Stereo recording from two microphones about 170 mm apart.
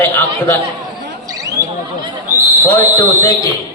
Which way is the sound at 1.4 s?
20° right (ahead or behind).